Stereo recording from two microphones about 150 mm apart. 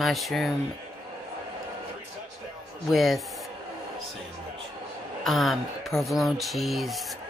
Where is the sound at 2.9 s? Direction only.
Centre (ahead or behind).